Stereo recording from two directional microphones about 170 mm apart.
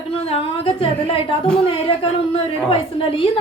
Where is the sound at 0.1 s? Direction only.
35° left (ahead or behind).